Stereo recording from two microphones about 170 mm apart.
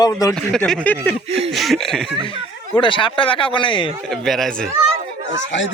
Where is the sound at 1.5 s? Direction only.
Centre (ahead or behind).